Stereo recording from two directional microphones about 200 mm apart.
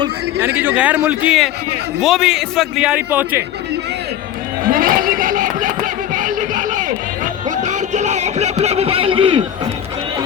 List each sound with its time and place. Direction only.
0.3 s a man's voice: 10° right (ahead or behind)
4.7 s a sound: 45° right (ahead or behind)
7.5 s music: 35° right (ahead or behind)